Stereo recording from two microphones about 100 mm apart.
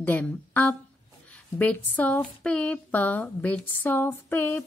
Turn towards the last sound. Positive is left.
turn(degrees=20)  # may be behind; listen again after turning